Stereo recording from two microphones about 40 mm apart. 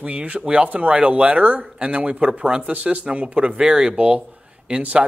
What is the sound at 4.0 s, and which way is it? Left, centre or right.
Speech, right.